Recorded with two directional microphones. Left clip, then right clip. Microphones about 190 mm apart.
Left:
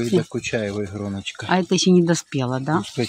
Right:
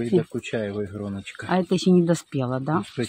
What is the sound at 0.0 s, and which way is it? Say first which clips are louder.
Speech: left 2 dB; 35° left (ahead or behind).